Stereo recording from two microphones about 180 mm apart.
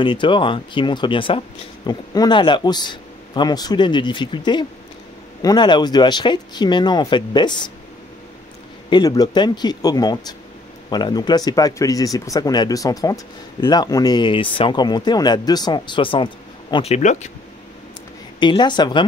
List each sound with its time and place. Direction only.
0.0 s speech: 25° left (ahead or behind)
8.9 s speech: 20° left (ahead or behind); by 17.3 s 40° left (ahead or behind)
18.4 s speech: 25° left (ahead or behind)